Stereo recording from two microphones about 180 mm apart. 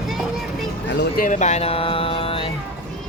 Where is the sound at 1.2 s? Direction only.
40° left (ahead or behind).